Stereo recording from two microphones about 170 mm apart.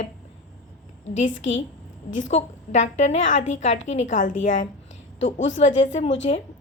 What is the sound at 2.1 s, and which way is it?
A woman's voice, 45° left (ahead or behind).